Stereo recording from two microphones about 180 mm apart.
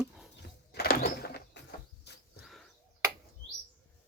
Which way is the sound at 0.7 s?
55° left (ahead or behind).